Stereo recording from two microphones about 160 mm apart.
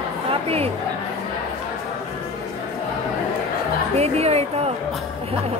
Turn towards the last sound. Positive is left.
turn(degrees=-40)  # may be behind; listen again after turning